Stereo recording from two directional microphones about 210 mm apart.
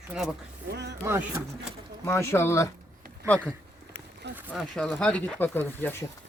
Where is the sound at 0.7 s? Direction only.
55° right (ahead or behind).